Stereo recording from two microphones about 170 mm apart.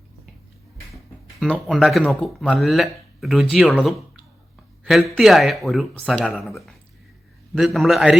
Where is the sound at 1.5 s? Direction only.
5° right (ahead or behind).